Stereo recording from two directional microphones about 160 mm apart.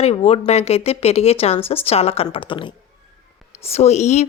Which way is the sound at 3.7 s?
45° left (ahead or behind).